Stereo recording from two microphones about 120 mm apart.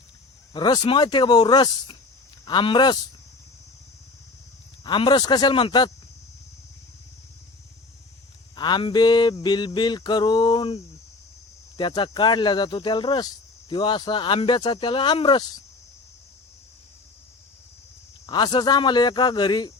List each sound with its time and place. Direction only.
0.5 s a man's voice: 35° left (ahead or behind)
4.8 s speech: 40° left (ahead or behind)
8.5 s speech: 40° left (ahead or behind)
11.8 s speech: 40° left (ahead or behind)
18.3 s speech: 40° left (ahead or behind)